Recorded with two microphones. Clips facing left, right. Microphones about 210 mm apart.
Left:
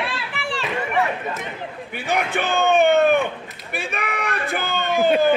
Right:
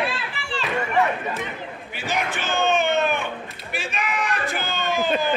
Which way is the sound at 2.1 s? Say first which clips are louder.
Left 4 dB; 60° left (ahead or behind).